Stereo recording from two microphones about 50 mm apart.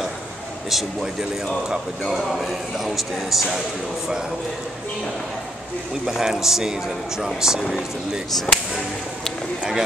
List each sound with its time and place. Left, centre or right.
2.1 s speech: centre
6.0 s speech: centre
8.5 s speech: left